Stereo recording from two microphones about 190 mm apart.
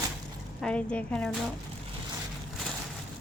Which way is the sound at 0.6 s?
5° left (ahead or behind).